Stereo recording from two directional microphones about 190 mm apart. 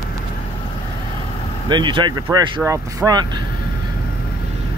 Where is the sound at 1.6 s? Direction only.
25° right (ahead or behind).